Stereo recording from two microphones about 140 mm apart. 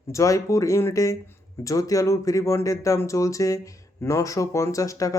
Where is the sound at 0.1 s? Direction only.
20° left (ahead or behind).